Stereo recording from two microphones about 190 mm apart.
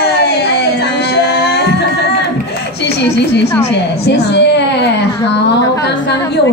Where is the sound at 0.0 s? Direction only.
60° left (ahead or behind).